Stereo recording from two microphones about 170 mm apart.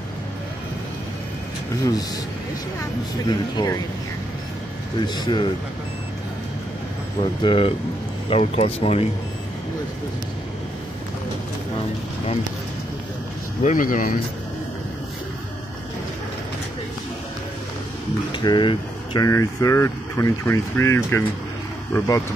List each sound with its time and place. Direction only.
3.3 s speech: 20° left (ahead or behind)
5.0 s speech: 25° left (ahead or behind)
7.4 s speech: 30° left (ahead or behind)
13.6 s speech: 50° left (ahead or behind)
18.3 s speech: 25° left (ahead or behind)